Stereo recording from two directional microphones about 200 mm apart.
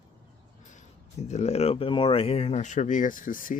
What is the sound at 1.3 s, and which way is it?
Speech, 35° left (ahead or behind).